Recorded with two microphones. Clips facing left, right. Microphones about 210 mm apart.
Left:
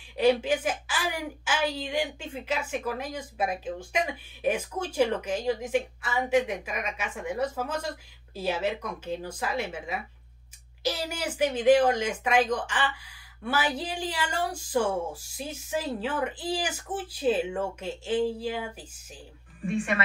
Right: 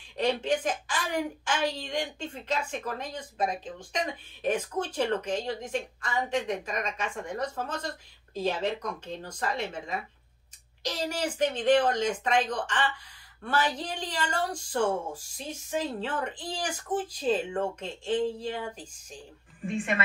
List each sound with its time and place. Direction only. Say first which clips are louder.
0.2 s a woman's voice: left 4 dB; 5° left (ahead or behind)
19.6 s a woman's voice: left 2 dB; 15° right (ahead or behind)